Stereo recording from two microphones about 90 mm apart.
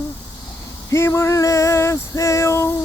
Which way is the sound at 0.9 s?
30° left (ahead or behind).